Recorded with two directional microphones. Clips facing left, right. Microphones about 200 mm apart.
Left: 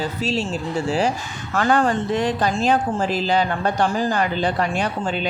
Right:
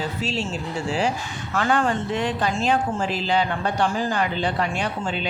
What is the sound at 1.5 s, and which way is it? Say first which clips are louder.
Speech: left 3 dB; 40° left (ahead or behind).